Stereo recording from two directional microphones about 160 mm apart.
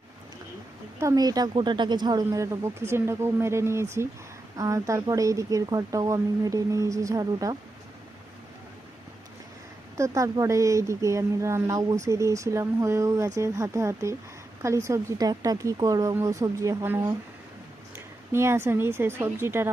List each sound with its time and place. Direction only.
0.9 s speech: 20° right (ahead or behind)
10.0 s a woman's voice: 20° right (ahead or behind)